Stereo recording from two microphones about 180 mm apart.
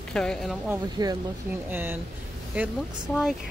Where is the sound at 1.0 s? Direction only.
25° right (ahead or behind).